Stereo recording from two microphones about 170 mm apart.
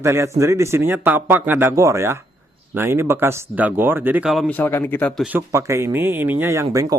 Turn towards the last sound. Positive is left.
turn(degrees=-20)  # may be behind; listen again after turning